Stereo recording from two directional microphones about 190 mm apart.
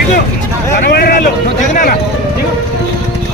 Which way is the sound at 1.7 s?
45° left (ahead or behind).